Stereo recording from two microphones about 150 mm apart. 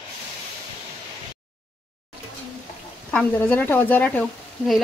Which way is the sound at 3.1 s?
10° left (ahead or behind).